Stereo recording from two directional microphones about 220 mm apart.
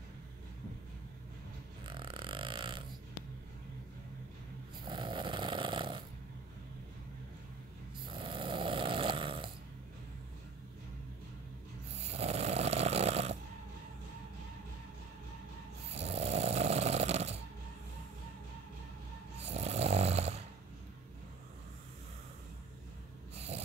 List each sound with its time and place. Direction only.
1.9 s a sound: 20° right (ahead or behind)
4.8 s snoring: 20° right (ahead or behind)
8.1 s snoring: 25° right (ahead or behind)
12.0 s snoring: 30° right (ahead or behind)
15.9 s snoring: 25° right (ahead or behind)
19.5 s snoring: 30° right (ahead or behind)
23.3 s snort: 25° right (ahead or behind)